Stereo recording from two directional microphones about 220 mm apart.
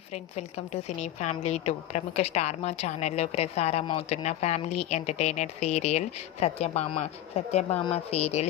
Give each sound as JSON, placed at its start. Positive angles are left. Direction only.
{"t": 0.1, "sound": "a woman's voice", "side_deg": 30}